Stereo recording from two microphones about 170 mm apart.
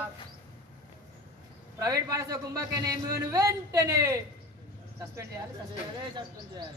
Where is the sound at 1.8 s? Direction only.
20° right (ahead or behind).